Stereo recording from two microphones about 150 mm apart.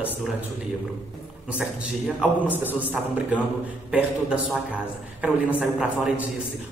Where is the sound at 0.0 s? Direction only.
10° right (ahead or behind).